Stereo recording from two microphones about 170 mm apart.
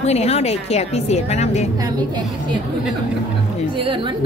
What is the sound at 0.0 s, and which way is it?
Speech, 40° left (ahead or behind).